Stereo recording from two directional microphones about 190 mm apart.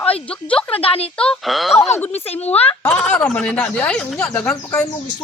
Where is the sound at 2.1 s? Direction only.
35° left (ahead or behind).